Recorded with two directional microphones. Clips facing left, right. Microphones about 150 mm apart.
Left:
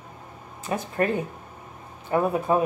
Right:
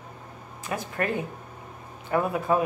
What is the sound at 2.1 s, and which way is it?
Speech, 25° left (ahead or behind).